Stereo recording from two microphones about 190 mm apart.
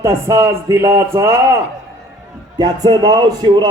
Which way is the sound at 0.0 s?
15° right (ahead or behind).